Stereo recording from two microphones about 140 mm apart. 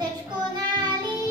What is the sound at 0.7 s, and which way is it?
Child singing, 30° right (ahead or behind).